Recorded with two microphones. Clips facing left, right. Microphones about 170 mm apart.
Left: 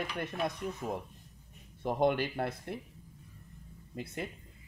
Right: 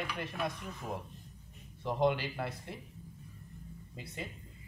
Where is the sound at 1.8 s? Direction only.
55° left (ahead or behind).